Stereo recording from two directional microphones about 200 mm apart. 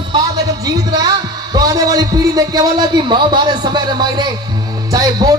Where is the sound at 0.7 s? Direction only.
20° right (ahead or behind).